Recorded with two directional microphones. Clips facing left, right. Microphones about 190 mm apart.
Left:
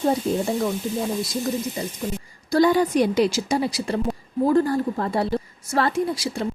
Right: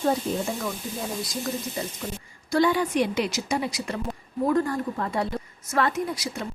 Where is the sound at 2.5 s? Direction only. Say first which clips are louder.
Left 4 dB; 40° left (ahead or behind).